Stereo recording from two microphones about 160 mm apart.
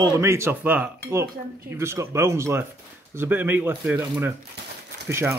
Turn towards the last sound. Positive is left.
turn(degrees=-15)  # may be behind; listen again after turning